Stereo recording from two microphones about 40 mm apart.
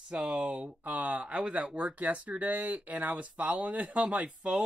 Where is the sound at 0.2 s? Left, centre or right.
Right.